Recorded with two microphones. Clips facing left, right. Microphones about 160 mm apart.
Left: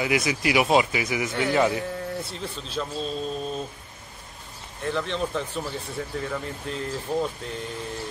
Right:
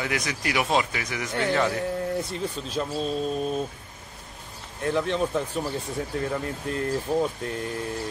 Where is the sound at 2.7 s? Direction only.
10° right (ahead or behind).